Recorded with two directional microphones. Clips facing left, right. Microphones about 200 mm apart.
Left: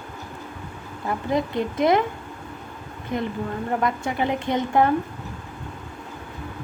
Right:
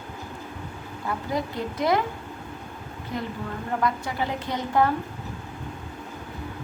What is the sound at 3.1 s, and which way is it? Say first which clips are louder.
A woman's voice: left 5 dB; 20° left (ahead or behind).